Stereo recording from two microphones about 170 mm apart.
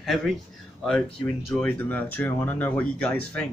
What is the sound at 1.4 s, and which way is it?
Speech, 15° left (ahead or behind).